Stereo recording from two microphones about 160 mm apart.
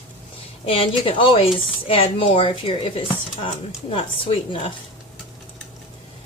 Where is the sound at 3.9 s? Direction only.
35° left (ahead or behind).